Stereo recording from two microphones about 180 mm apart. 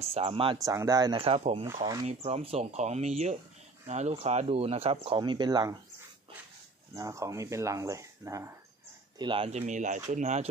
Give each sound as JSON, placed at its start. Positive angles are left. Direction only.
{"t": 0.0, "sound": "speech", "side_deg": -30}
{"t": 0.7, "sound": "speech", "side_deg": -20}
{"t": 1.2, "sound": "speech", "side_deg": -30}
{"t": 7.0, "sound": "speech", "side_deg": -20}
{"t": 9.2, "sound": "speech", "side_deg": -30}